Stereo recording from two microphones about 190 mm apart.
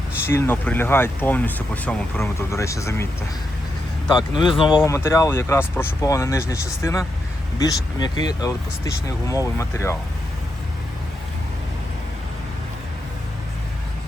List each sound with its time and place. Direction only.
0.3 s speech: 10° left (ahead or behind)
4.1 s speech: 25° left (ahead or behind)
7.6 s speech: 20° left (ahead or behind)